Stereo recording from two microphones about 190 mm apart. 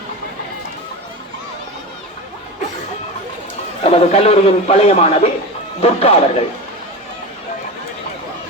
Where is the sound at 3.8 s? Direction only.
30° left (ahead or behind).